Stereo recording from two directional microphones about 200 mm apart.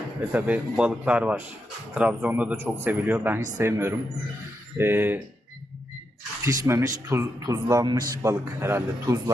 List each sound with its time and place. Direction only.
0.3 s a man's voice: 10° right (ahead or behind)
6.4 s a man's voice: 15° right (ahead or behind)